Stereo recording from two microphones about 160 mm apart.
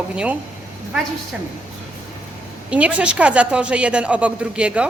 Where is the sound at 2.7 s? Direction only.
10° right (ahead or behind).